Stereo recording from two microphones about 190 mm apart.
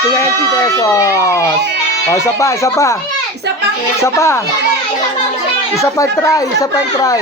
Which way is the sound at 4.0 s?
15° left (ahead or behind).